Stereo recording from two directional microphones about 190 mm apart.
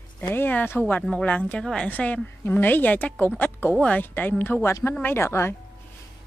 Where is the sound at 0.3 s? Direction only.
10° left (ahead or behind).